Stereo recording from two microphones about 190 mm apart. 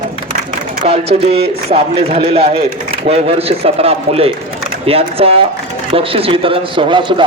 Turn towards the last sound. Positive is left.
turn(degrees=-25)  # may be behind; listen again after turning